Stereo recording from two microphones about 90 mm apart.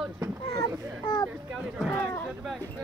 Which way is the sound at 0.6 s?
50° left (ahead or behind).